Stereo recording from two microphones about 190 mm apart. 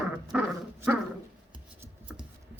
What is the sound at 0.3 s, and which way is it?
Speech, 5° right (ahead or behind).